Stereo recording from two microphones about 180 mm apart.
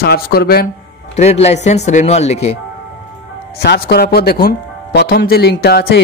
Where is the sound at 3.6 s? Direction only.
60° left (ahead or behind).